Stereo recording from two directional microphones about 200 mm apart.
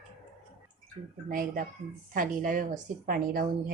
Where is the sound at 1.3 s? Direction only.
45° right (ahead or behind).